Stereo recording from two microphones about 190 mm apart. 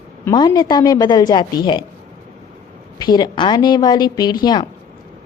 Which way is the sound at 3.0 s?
20° left (ahead or behind).